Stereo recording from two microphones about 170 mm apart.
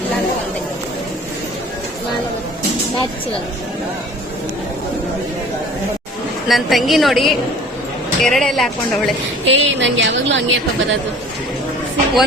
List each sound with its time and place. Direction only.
6.5 s a woman's voice: centre (ahead or behind)
9.5 s a woman's voice: 90° right